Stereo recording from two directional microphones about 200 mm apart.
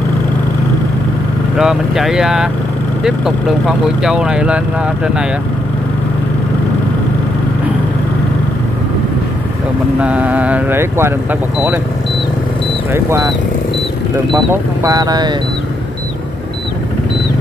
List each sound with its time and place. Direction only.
1.6 s speech: centre (ahead or behind)
9.9 s speech: 5° right (ahead or behind)
12.9 s speech: 15° right (ahead or behind)
14.3 s speech: 15° right (ahead or behind)